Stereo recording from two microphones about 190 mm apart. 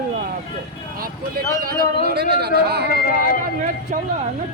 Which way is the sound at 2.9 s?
50° left (ahead or behind).